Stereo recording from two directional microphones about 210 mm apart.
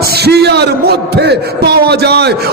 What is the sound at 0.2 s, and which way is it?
A man's voice, 50° right (ahead or behind).